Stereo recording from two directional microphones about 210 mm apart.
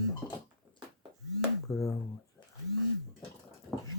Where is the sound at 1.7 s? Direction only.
15° left (ahead or behind).